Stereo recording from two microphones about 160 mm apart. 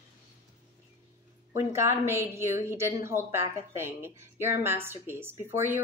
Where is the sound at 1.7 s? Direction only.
15° right (ahead or behind).